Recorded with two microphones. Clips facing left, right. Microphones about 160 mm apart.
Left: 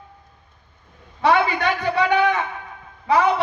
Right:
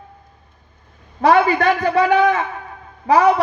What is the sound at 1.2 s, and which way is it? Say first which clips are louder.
A man's voice: right 5 dB; 40° right (ahead or behind).